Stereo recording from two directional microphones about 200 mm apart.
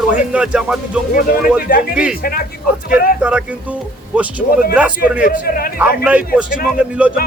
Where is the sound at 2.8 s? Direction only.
45° left (ahead or behind).